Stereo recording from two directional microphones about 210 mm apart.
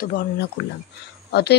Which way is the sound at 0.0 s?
45° left (ahead or behind).